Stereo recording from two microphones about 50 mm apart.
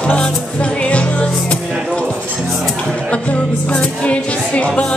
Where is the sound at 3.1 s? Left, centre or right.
Left.